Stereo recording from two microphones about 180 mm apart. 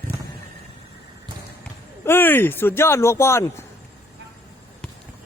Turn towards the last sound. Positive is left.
turn(degrees=15)  # may be behind; listen again after turning